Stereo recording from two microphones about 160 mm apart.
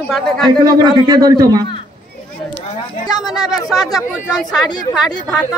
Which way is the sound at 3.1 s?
25° left (ahead or behind).